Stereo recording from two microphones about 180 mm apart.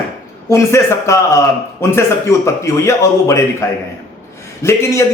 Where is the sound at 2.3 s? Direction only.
15° left (ahead or behind).